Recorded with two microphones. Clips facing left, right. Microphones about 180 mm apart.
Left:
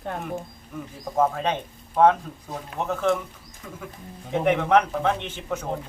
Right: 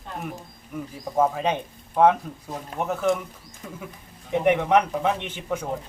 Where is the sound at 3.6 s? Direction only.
20° right (ahead or behind).